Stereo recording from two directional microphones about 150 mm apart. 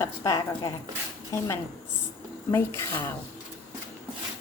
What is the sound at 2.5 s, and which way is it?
Speech, 15° left (ahead or behind).